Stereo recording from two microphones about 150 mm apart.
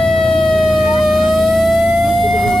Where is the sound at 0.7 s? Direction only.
Centre (ahead or behind).